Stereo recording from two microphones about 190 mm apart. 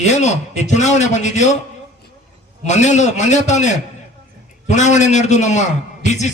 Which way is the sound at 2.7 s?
40° left (ahead or behind).